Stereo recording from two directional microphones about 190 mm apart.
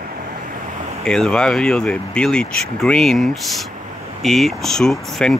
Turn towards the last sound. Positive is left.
turn(degrees=0)  # may be behind; listen again after turning